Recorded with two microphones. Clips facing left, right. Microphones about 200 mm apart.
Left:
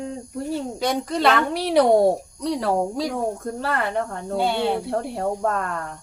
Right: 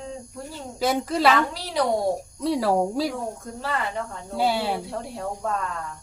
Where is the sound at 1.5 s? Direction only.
65° left (ahead or behind).